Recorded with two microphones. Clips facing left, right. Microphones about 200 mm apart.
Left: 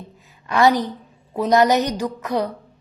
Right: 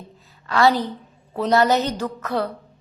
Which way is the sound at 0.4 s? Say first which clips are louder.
Left 1 dB; 20° left (ahead or behind).